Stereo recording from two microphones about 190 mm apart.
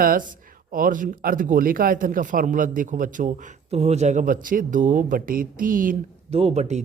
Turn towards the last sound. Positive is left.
turn(degrees=-35)  # may be behind; listen again after turning